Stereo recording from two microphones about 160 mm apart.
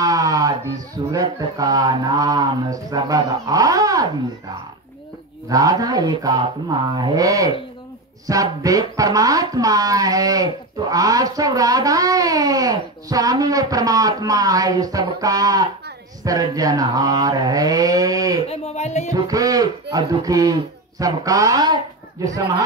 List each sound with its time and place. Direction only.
0.0 s a sound: 20° right (ahead or behind)
1.1 s speech: 25° right (ahead or behind)
5.5 s speech: 20° right (ahead or behind)
18.5 s speech: 40° left (ahead or behind)
19.1 s speech: 25° right (ahead or behind)